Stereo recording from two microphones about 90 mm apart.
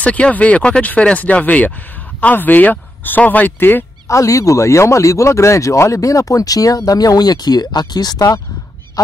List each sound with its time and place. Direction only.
0.0 s speech: 15° left (ahead or behind)
4.1 s speech: 35° left (ahead or behind)
9.0 s goose: 45° left (ahead or behind)